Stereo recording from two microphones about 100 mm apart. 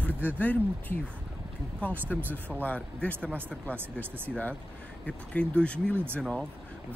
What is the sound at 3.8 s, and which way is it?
Speech, 20° right (ahead or behind).